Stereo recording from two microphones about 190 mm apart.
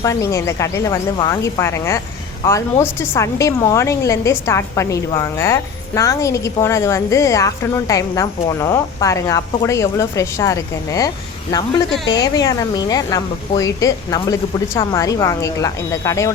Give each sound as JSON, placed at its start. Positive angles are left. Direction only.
{"t": 0.0, "sound": "a woman's voice", "side_deg": 15}